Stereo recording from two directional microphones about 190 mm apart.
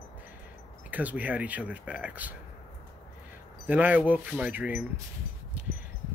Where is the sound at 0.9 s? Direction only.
10° right (ahead or behind).